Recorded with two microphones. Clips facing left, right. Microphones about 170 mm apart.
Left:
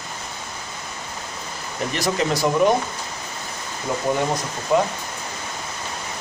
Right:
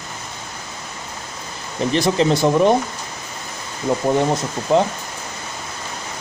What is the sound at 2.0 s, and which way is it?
Speech, 25° right (ahead or behind).